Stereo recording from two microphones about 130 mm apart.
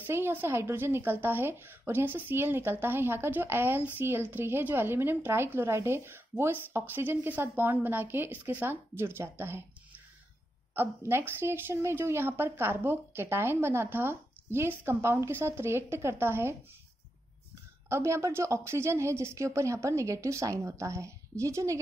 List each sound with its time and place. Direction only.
0.0 s a woman's voice: 15° right (ahead or behind)
17.8 s a woman's voice: 20° right (ahead or behind)